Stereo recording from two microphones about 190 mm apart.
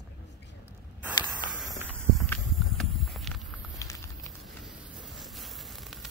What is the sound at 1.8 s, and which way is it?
Horse, 5° left (ahead or behind).